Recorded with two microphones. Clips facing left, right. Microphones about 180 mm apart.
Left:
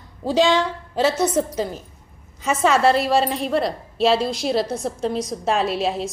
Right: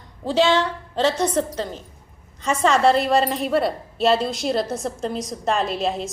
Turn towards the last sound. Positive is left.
turn(degrees=0)  # may be behind; listen again after turning